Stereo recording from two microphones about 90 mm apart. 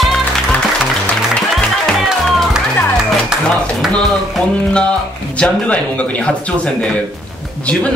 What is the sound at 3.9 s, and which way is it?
Speech, 5° left (ahead or behind).